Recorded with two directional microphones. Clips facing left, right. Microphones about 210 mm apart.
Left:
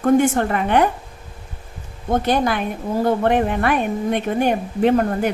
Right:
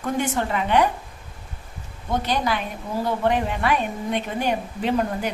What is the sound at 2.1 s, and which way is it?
A woman's voice, 50° left (ahead or behind).